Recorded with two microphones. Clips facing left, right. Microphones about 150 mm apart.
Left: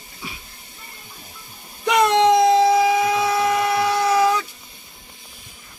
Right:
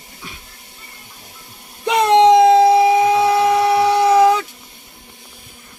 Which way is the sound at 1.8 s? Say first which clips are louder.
Right 4 dB; 20° right (ahead or behind).